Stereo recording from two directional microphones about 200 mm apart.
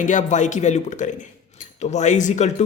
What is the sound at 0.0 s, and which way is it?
A man's voice, 40° left (ahead or behind).